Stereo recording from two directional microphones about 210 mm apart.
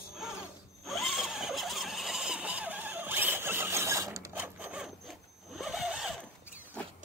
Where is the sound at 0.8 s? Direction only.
Centre (ahead or behind).